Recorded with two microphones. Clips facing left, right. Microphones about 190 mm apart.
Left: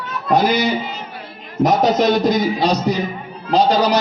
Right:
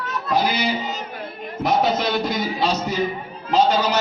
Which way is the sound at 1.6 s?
40° left (ahead or behind).